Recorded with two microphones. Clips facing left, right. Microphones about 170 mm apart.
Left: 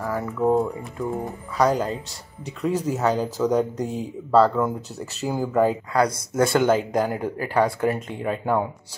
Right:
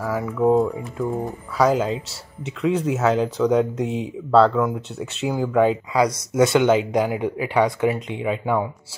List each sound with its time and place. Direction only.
0.0 s speech: centre (ahead or behind)